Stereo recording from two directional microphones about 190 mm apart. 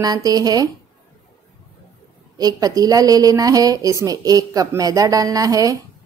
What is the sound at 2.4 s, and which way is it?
A woman's voice, 20° right (ahead or behind).